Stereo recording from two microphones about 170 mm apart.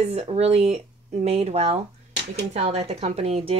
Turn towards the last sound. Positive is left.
turn(degrees=-35)  # may be behind; listen again after turning